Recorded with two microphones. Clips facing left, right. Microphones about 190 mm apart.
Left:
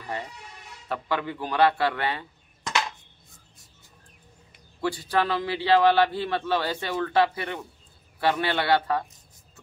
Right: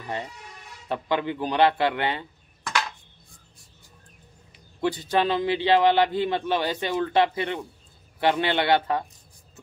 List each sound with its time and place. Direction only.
0.8 s a man's voice: 20° right (ahead or behind)
4.8 s a man's voice: 20° right (ahead or behind)